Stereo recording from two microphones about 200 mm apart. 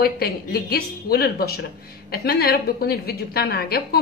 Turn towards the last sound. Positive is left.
turn(degrees=50)  # may be behind; listen again after turning